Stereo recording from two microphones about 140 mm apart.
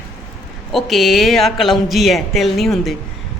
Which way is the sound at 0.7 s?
Centre (ahead or behind).